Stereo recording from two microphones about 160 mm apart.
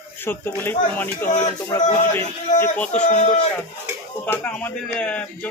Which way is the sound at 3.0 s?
45° left (ahead or behind).